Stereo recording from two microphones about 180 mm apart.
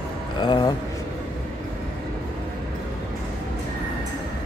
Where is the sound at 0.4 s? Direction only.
25° left (ahead or behind).